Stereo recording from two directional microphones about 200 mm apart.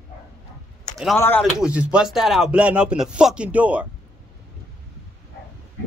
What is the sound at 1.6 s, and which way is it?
Speech, 5° right (ahead or behind).